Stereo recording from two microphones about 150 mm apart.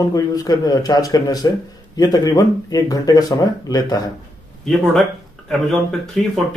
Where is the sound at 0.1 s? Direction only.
25° left (ahead or behind).